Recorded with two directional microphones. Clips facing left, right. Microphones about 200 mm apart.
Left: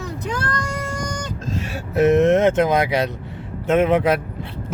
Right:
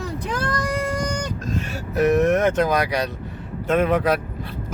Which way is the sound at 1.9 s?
25° left (ahead or behind).